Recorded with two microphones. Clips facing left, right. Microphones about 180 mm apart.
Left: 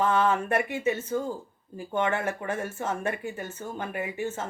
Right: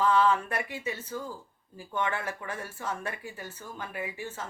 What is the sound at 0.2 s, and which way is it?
Speech, 50° left (ahead or behind).